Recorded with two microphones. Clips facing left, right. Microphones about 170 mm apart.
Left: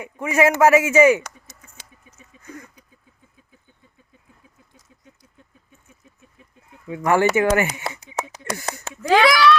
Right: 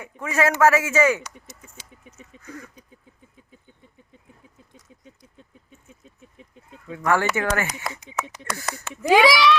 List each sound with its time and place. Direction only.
0.0 s a man's voice: 15° left (ahead or behind)
6.8 s a man's voice: 15° left (ahead or behind)
7.9 s a sound: 30° left (ahead or behind)
9.0 s a child's voice: 10° right (ahead or behind)